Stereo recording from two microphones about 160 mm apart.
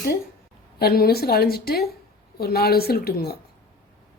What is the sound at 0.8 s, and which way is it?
A woman's voice, 75° left (ahead or behind).